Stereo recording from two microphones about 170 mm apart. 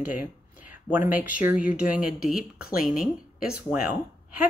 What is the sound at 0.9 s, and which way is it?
Speech, 10° right (ahead or behind).